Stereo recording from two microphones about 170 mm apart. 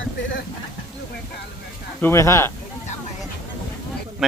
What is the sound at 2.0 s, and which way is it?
Speech, 15° left (ahead or behind).